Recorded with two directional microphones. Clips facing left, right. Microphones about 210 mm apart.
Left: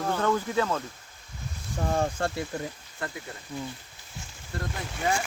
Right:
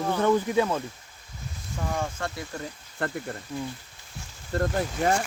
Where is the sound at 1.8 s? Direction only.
35° left (ahead or behind).